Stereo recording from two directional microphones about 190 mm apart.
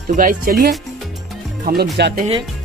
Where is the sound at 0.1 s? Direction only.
45° right (ahead or behind).